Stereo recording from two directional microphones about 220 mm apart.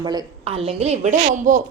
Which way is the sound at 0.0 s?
20° right (ahead or behind).